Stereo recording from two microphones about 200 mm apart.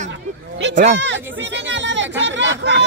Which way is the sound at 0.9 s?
65° right (ahead or behind).